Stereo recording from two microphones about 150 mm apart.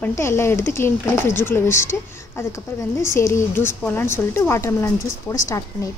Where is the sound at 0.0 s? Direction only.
15° left (ahead or behind).